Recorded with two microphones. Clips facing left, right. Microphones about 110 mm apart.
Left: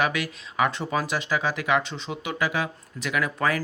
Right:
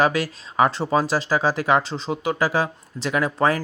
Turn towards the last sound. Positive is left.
turn(degrees=-30)  # may be behind; listen again after turning